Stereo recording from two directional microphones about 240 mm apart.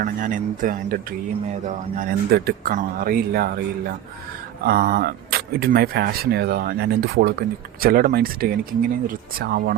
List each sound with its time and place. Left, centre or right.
0.0 s speech: right
4.6 s speech: right